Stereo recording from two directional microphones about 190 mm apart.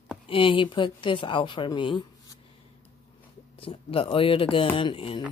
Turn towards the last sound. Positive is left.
turn(degrees=25)  # may be behind; listen again after turning